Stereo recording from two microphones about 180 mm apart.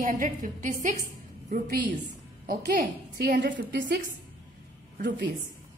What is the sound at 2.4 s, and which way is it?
A woman's voice, 60° right (ahead or behind).